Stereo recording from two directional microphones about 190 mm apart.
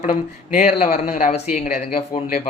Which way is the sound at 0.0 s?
45° left (ahead or behind).